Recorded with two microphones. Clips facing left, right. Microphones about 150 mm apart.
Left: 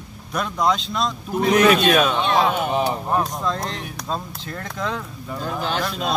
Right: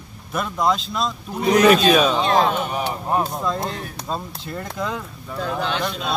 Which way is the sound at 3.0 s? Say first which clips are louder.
Even; 5° right (ahead or behind).